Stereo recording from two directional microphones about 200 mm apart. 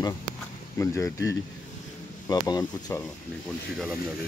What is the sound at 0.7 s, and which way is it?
Speech, 15° left (ahead or behind).